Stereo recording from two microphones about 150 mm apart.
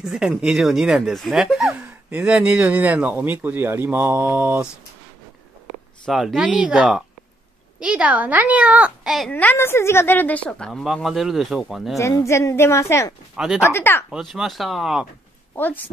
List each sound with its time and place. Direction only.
0.0 s speech: centre (ahead or behind)
6.0 s speech: centre (ahead or behind)
9.3 s speech: 10° left (ahead or behind)
12.0 s a woman's voice: 20° left (ahead or behind)
13.4 s speech: 5° right (ahead or behind)
13.7 s a woman's voice: 15° left (ahead or behind)
14.1 s speech: centre (ahead or behind)
15.5 s a woman's voice: 10° left (ahead or behind)